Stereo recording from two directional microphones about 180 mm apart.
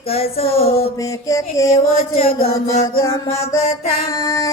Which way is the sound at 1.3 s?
20° left (ahead or behind).